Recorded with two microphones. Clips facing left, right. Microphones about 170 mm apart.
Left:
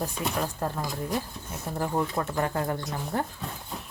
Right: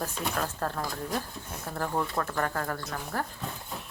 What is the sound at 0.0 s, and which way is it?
Speech, 15° left (ahead or behind).